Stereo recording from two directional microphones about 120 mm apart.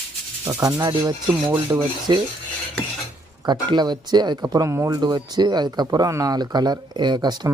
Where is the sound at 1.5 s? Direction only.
20° right (ahead or behind).